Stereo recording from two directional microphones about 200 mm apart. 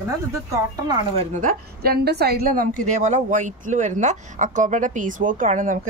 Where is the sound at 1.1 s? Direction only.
40° right (ahead or behind).